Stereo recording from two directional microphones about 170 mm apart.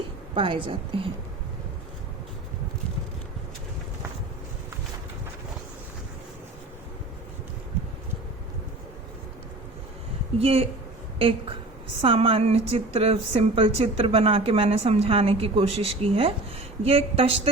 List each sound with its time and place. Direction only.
0.3 s a woman's voice: 30° right (ahead or behind)
10.3 s a woman's voice: 35° right (ahead or behind)